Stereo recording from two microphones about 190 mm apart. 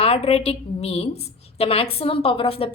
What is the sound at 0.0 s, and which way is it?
A woman's voice, 30° left (ahead or behind).